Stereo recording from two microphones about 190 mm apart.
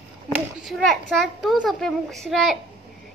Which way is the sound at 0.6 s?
Centre (ahead or behind).